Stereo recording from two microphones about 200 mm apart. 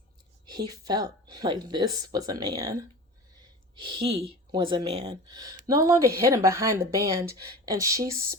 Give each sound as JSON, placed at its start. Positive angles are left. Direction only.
{"t": 0.4, "sound": "a woman's voice", "side_deg": -20}
{"t": 4.5, "sound": "a woman's voice", "side_deg": -25}